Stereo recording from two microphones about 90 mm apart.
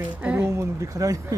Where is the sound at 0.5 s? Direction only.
35° right (ahead or behind).